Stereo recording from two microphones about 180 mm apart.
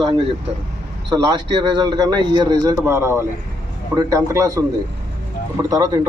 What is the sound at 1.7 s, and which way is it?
A man's voice, 20° right (ahead or behind).